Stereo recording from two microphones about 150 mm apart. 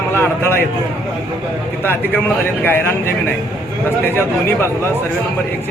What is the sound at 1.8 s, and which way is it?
Speech, 15° left (ahead or behind).